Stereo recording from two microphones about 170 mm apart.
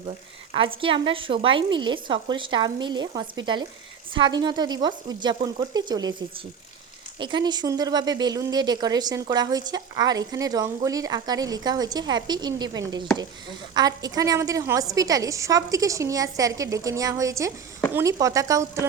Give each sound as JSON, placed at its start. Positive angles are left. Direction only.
{"t": 0.5, "sound": "a woman's voice", "side_deg": -30}
{"t": 7.2, "sound": "a woman's voice", "side_deg": -25}